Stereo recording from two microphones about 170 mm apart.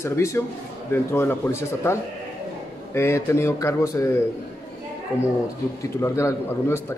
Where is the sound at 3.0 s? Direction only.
15° left (ahead or behind).